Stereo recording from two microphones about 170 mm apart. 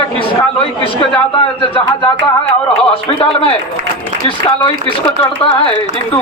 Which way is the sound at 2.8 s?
30° left (ahead or behind).